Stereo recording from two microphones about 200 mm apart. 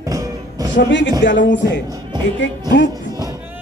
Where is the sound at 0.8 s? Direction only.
65° left (ahead or behind).